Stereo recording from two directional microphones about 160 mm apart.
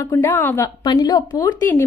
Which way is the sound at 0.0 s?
20° left (ahead or behind).